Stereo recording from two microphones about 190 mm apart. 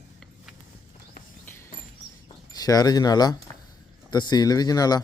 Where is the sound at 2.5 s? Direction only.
20° left (ahead or behind).